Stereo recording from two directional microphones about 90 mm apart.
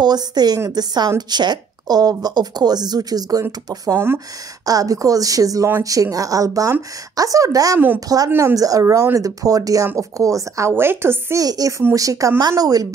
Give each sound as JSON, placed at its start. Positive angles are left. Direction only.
{"t": 0.0, "sound": "a woman's voice", "side_deg": -50}
{"t": 10.7, "sound": "speech", "side_deg": -25}
{"t": 11.4, "sound": "a woman's voice", "side_deg": -45}